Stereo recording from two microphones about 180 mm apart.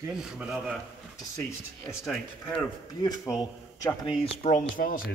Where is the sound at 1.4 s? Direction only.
15° left (ahead or behind).